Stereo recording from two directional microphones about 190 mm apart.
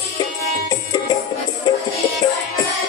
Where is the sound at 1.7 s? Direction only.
20° left (ahead or behind).